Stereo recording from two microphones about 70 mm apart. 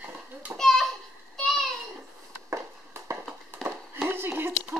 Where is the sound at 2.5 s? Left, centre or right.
Right.